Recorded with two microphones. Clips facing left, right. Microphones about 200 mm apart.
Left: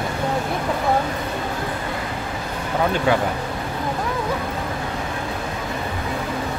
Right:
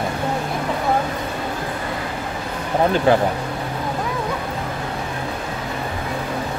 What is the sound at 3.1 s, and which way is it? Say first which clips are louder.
Speech: right 4 dB; 35° right (ahead or behind).